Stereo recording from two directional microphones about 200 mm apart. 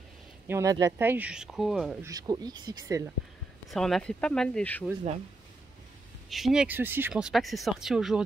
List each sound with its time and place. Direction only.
0.5 s speech: 15° right (ahead or behind)
2.0 s speech: 20° right (ahead or behind)
3.7 s speech: centre (ahead or behind)
6.3 s speech: centre (ahead or behind)